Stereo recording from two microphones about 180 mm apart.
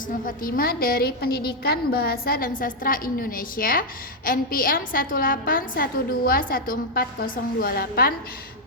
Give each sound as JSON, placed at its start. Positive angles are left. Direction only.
{"t": 0.3, "sound": "a woman's voice", "side_deg": 50}